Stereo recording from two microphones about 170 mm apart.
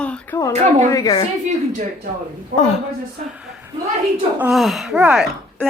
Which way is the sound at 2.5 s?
50° right (ahead or behind).